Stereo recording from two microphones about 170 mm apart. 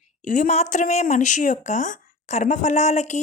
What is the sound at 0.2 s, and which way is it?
A woman's voice, 45° left (ahead or behind).